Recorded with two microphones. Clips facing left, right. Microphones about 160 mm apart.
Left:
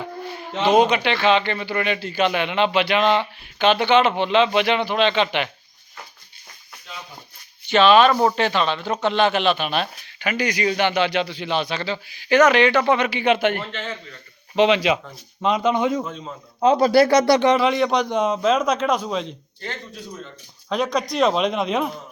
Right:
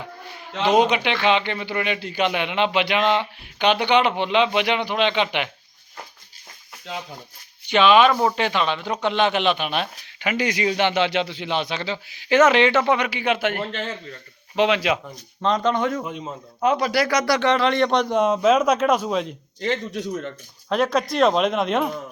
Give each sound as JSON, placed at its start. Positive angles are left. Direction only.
{"t": 0.7, "sound": "speech", "side_deg": -20}
{"t": 6.9, "sound": "speech", "side_deg": -90}
{"t": 7.7, "sound": "speech", "side_deg": -15}
{"t": 13.6, "sound": "a man's voice", "side_deg": -35}
{"t": 14.5, "sound": "speech", "side_deg": -5}
{"t": 16.0, "sound": "speech", "side_deg": -15}
{"t": 16.6, "sound": "speech", "side_deg": 25}
{"t": 17.5, "sound": "a man's voice", "side_deg": 10}
{"t": 19.5, "sound": "a man's voice", "side_deg": -85}
{"t": 20.7, "sound": "a man's voice", "side_deg": 0}